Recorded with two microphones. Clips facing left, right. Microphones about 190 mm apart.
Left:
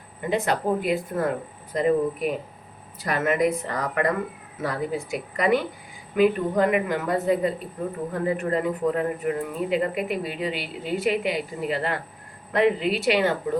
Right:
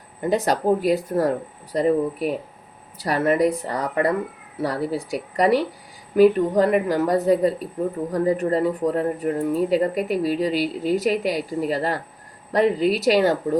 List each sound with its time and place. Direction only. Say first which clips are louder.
0.2 s speech: right 3 dB; 40° right (ahead or behind)